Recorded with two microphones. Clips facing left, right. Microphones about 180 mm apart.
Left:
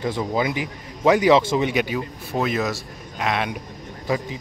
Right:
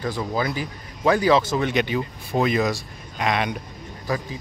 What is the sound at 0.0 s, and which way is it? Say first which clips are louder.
Speech: left 2 dB; 20° left (ahead or behind).